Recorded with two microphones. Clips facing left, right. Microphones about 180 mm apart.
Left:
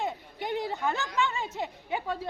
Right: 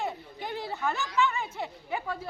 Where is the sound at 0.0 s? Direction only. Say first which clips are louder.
Left 1 dB; 20° left (ahead or behind).